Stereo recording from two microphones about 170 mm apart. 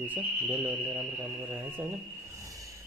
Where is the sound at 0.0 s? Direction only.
10° right (ahead or behind).